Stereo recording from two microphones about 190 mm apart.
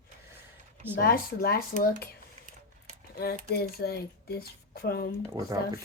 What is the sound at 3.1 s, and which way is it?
Speech, 55° left (ahead or behind).